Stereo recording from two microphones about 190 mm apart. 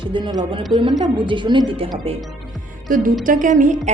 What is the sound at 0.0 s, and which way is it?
A woman's voice, 25° right (ahead or behind).